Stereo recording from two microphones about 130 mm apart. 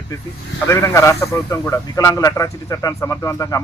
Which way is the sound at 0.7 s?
20° left (ahead or behind).